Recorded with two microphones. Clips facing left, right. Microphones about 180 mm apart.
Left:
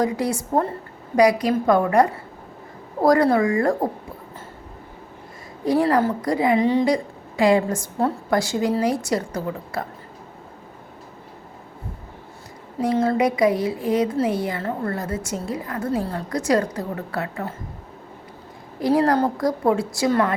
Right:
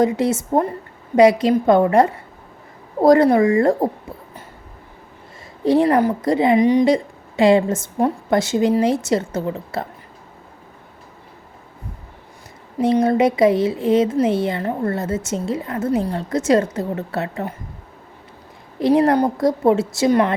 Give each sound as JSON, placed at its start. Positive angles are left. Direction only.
{"t": 0.0, "sound": "speech", "side_deg": -25}
{"t": 5.6, "sound": "speech", "side_deg": -25}
{"t": 12.8, "sound": "speech", "side_deg": -25}
{"t": 18.8, "sound": "speech", "side_deg": -25}